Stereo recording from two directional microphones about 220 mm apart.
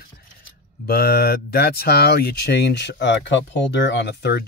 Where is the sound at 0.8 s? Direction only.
45° left (ahead or behind).